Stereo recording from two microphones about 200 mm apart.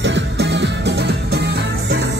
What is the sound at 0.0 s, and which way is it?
Music, 60° right (ahead or behind).